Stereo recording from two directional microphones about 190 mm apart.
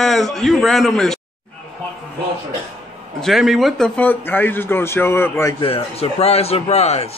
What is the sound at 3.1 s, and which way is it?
A man's voice, centre (ahead or behind).